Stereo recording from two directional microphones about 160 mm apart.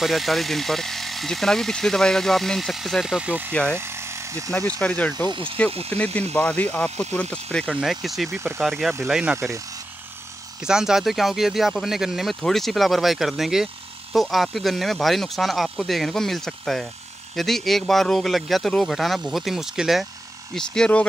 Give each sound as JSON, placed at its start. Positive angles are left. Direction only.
{"t": 0.0, "sound": "speech", "side_deg": 0}
{"t": 3.7, "sound": "electric toothbrush", "side_deg": -15}
{"t": 4.6, "sound": "speech", "side_deg": 5}
{"t": 10.6, "sound": "speech", "side_deg": -5}